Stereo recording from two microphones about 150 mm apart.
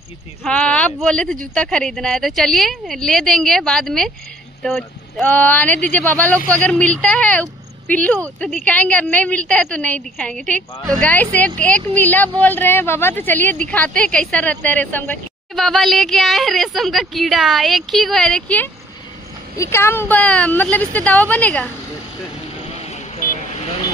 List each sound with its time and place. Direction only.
0.4 s speech: 5° left (ahead or behind)
5.2 s speech: 10° left (ahead or behind)
19.5 s speech: 20° left (ahead or behind)
22.7 s vehicle: 45° left (ahead or behind)